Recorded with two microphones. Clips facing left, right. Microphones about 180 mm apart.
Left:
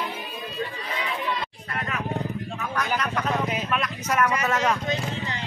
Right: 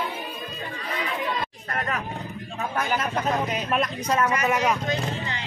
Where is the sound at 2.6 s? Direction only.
25° right (ahead or behind).